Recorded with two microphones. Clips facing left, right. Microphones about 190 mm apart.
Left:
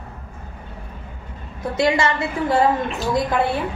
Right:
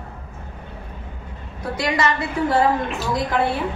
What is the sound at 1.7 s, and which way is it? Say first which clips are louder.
Speech: left 3 dB; 25° left (ahead or behind).